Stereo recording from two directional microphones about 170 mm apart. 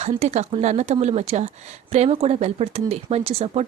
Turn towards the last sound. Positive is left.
turn(degrees=-35)  # may be behind; listen again after turning